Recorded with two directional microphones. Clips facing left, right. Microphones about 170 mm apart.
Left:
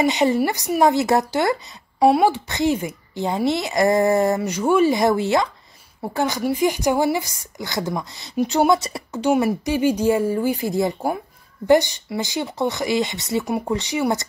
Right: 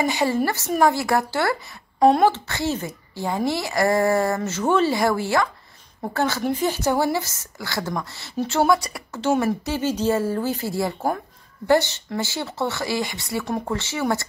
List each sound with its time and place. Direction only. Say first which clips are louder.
0.0 s a woman's voice: left 3 dB; 20° left (ahead or behind)